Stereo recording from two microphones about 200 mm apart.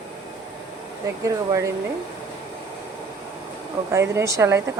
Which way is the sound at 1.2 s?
15° right (ahead or behind).